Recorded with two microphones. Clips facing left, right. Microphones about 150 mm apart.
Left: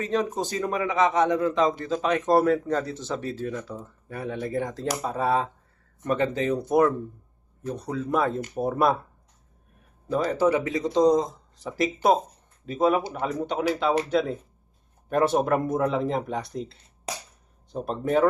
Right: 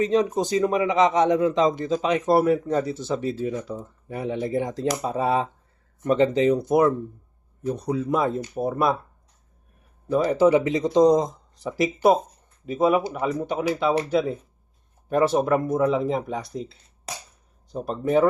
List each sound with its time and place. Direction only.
0.0 s speech: 15° right (ahead or behind)
8.5 s speech: centre (ahead or behind)
10.1 s speech: 15° right (ahead or behind)